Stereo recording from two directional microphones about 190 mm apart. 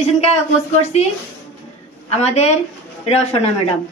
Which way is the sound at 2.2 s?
35° left (ahead or behind).